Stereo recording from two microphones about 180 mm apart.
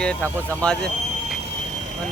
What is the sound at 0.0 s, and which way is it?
Speech, 5° left (ahead or behind).